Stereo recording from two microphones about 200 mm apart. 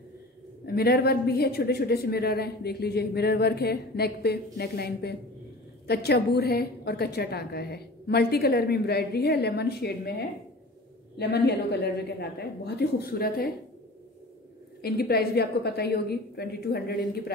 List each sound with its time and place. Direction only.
0.7 s a woman's voice: 50° left (ahead or behind)
14.8 s a woman's voice: 50° left (ahead or behind)